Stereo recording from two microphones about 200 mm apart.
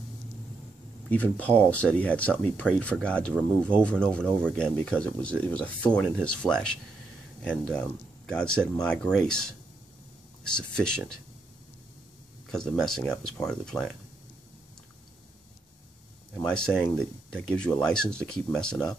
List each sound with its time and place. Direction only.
1.1 s speech: 5° left (ahead or behind)
8.3 s speech: 5° left (ahead or behind)
12.4 s speech: 5° left (ahead or behind)
16.3 s speech: 5° left (ahead or behind)